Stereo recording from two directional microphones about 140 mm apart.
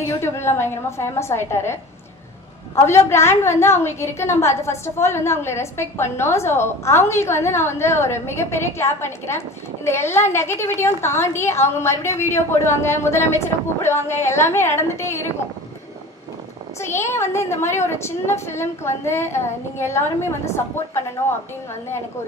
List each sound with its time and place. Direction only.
0.2 s a woman's voice: 20° left (ahead or behind)
17.1 s a woman's voice: 20° left (ahead or behind)